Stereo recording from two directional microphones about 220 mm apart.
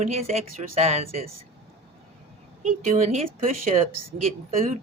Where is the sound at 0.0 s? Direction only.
30° right (ahead or behind).